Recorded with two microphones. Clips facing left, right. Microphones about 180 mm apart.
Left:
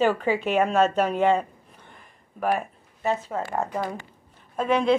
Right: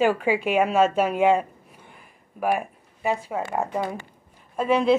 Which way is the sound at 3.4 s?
25° right (ahead or behind).